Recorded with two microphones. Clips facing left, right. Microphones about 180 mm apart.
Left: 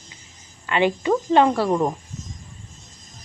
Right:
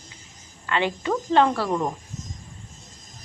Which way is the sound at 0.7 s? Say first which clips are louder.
Left 5 dB; 15° left (ahead or behind).